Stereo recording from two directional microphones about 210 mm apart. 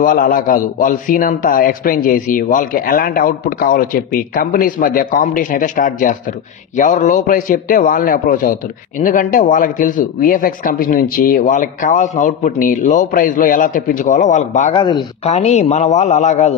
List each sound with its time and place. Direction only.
0.0 s a man's voice: 40° left (ahead or behind)
14.8 s speech: 20° left (ahead or behind)
15.3 s a man's voice: 30° left (ahead or behind)